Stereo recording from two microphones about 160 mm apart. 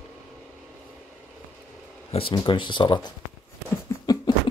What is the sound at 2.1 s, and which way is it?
Speech, 35° left (ahead or behind).